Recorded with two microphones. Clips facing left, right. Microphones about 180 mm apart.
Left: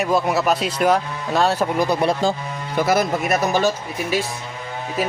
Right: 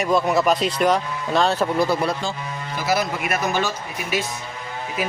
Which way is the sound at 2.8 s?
50° left (ahead or behind).